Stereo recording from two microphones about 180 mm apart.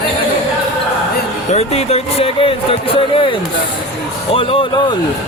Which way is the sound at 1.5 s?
35° left (ahead or behind).